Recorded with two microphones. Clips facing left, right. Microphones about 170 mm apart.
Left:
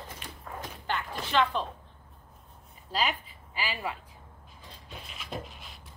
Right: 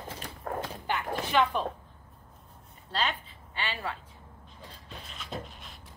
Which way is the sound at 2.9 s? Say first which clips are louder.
Left 1 dB; 5° left (ahead or behind).